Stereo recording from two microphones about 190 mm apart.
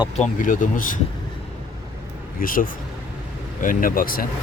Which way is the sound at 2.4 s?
45° left (ahead or behind).